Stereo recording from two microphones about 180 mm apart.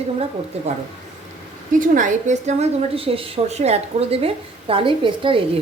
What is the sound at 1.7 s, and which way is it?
A woman's voice, 45° right (ahead or behind).